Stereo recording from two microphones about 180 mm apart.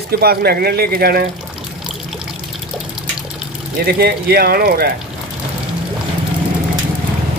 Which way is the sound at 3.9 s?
55° right (ahead or behind).